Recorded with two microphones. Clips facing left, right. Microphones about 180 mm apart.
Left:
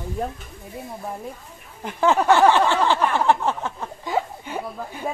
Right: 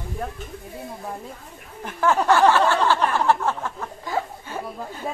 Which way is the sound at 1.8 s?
20° left (ahead or behind).